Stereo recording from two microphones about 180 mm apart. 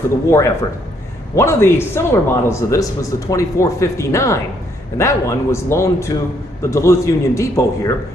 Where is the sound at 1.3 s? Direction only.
15° left (ahead or behind).